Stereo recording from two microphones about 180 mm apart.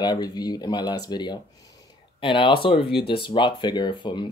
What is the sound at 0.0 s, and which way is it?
Speech, 20° left (ahead or behind).